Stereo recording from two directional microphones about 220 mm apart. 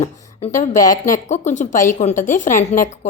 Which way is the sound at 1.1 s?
35° left (ahead or behind).